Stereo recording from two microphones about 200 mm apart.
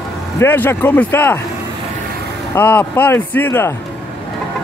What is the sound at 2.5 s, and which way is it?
Speech, 10° left (ahead or behind).